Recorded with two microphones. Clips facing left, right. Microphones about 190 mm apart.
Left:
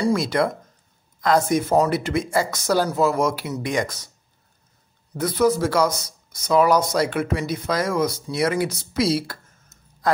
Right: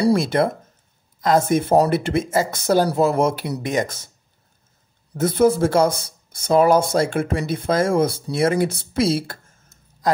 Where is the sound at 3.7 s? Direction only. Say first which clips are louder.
Right 2 dB; 25° right (ahead or behind).